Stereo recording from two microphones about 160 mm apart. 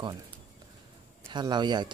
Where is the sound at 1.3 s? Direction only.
30° right (ahead or behind).